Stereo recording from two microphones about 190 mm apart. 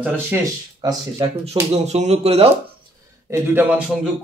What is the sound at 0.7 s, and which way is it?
Speech, 25° right (ahead or behind).